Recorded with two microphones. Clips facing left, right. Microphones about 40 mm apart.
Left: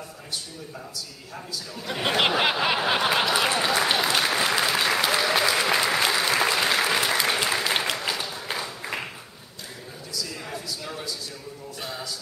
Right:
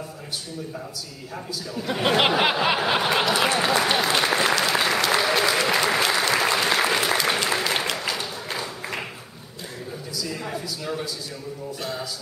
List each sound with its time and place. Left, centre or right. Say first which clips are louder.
1.3 s speech: right 5 dB; centre
5.1 s applause: right 1 dB; centre
10.1 s a sound: right 3 dB; centre